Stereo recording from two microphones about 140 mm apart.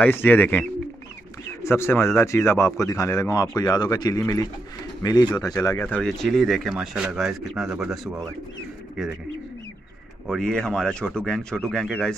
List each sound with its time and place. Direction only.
0.0 s speech: 15° left (ahead or behind)
5.9 s speech: 5° left (ahead or behind)
10.2 s speech: 5° left (ahead or behind)